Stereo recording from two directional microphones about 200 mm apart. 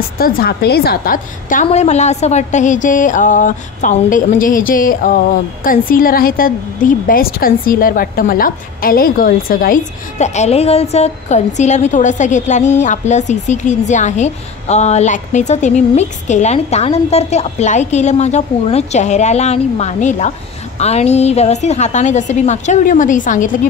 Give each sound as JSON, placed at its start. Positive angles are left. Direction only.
{"t": 0.2, "sound": "a woman's voice", "side_deg": 50}